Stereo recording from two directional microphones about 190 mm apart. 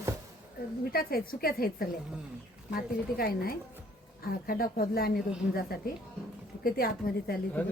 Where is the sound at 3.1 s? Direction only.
50° left (ahead or behind).